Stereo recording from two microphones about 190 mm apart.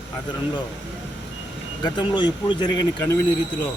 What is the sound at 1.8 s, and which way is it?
Speech, 25° left (ahead or behind).